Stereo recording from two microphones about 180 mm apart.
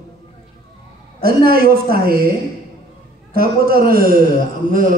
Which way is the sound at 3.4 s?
55° right (ahead or behind).